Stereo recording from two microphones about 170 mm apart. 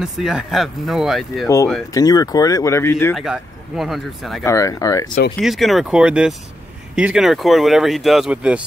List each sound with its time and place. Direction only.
0.0 s speech: 5° right (ahead or behind)
2.0 s speech: 20° left (ahead or behind)
3.2 s speech: centre (ahead or behind)
4.5 s speech: 20° left (ahead or behind)
5.4 s speech: centre (ahead or behind)